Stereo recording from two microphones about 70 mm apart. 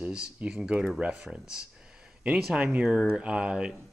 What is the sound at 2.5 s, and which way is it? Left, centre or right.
Speech, right.